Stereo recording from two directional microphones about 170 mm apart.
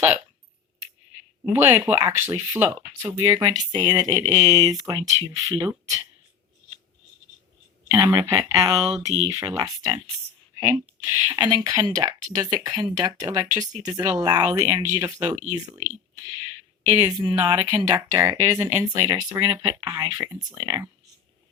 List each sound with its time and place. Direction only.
1.5 s speech: 15° right (ahead or behind)
3.3 s speech: 25° right (ahead or behind)
7.9 s speech: 20° right (ahead or behind)
16.9 s speech: 15° right (ahead or behind)